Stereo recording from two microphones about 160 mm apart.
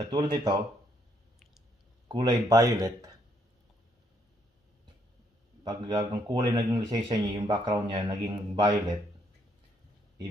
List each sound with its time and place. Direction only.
0.0 s speech: 25° right (ahead or behind)
2.0 s speech: 30° right (ahead or behind)
5.6 s speech: 25° right (ahead or behind)